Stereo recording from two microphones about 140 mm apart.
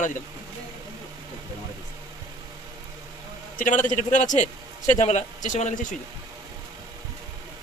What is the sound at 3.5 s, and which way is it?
A man's voice, 65° left (ahead or behind).